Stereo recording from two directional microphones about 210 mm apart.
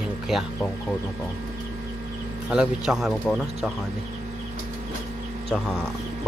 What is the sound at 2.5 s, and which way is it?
Speech, 5° right (ahead or behind).